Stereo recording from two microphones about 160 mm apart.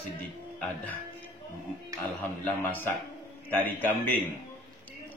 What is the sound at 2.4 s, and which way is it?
A man's voice, 10° left (ahead or behind).